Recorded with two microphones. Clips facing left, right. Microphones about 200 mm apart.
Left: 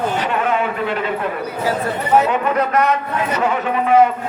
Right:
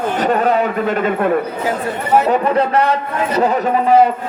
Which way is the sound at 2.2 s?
35° right (ahead or behind).